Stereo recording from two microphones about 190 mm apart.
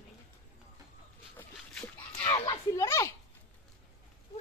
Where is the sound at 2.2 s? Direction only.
20° left (ahead or behind).